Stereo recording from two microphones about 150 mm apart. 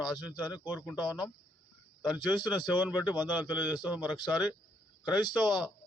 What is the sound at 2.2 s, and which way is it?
Speech, 30° left (ahead or behind).